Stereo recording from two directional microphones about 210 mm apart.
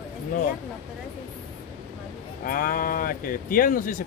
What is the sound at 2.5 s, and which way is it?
Speech, 40° left (ahead or behind).